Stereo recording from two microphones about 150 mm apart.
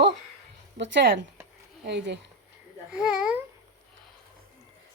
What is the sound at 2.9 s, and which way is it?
Speech, 5° right (ahead or behind).